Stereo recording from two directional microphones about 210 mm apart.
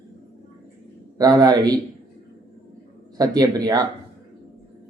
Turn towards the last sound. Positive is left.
turn(degrees=-20)  # may be behind; listen again after turning